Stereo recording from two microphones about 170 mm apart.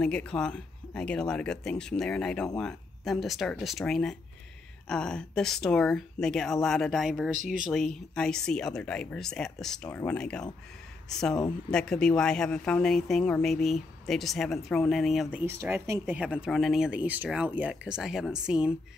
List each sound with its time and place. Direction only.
0.0 s speech: 5° left (ahead or behind)
15.4 s speech: 15° right (ahead or behind)